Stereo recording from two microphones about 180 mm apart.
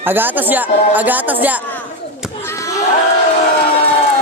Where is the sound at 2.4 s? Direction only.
15° left (ahead or behind).